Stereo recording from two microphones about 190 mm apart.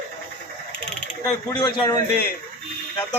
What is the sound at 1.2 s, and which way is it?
Speech, 15° left (ahead or behind).